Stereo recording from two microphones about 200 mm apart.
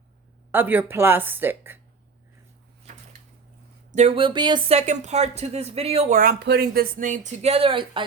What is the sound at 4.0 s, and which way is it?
Speech, 30° right (ahead or behind).